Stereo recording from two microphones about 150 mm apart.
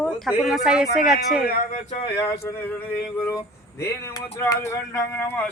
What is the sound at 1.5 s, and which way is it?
Speech, 70° left (ahead or behind).